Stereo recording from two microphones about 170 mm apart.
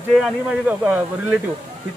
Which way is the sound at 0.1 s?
5° right (ahead or behind).